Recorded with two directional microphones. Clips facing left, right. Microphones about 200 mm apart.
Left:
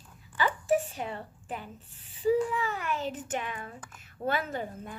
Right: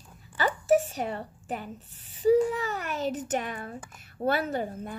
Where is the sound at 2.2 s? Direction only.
40° right (ahead or behind).